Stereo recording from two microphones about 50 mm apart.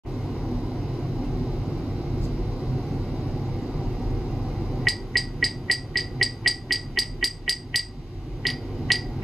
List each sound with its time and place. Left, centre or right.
0.1 s vehicle: centre
2.7 s vehicle: centre
3.0 s vehicle: centre
8.4 s a sound: centre